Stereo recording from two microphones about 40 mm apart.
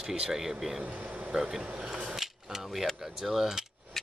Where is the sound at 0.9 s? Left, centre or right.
Right.